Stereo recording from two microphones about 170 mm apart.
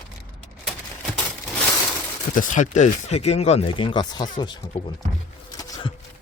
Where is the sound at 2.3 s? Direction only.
50° left (ahead or behind); by 4.6 s 25° left (ahead or behind).